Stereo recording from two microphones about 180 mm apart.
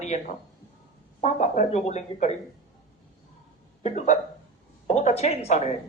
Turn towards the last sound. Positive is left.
turn(degrees=40)  # may be behind; listen again after turning